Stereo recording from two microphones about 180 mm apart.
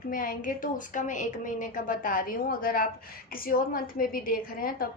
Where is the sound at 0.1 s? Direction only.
50° left (ahead or behind).